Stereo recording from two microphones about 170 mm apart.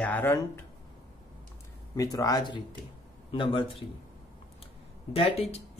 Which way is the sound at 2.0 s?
20° left (ahead or behind).